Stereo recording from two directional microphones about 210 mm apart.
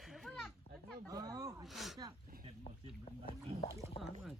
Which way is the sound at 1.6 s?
Centre (ahead or behind).